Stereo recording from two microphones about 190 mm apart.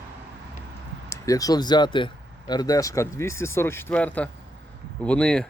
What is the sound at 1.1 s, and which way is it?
Speech, 20° left (ahead or behind).